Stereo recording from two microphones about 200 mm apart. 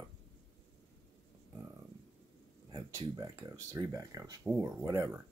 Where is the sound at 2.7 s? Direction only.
15° right (ahead or behind).